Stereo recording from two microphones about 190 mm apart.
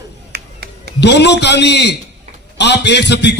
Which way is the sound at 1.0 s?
65° left (ahead or behind).